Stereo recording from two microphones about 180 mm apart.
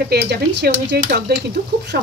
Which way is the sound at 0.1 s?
65° right (ahead or behind).